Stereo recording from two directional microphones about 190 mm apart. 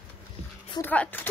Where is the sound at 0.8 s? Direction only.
10° left (ahead or behind).